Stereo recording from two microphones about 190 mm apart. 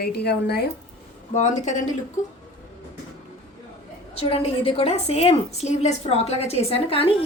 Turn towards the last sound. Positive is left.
turn(degrees=30)  # may be behind; listen again after turning